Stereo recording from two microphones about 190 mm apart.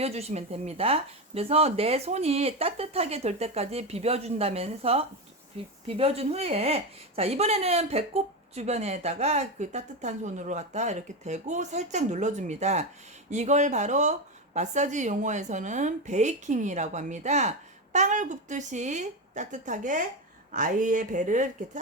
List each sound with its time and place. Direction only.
0.0 s speech: 35° right (ahead or behind)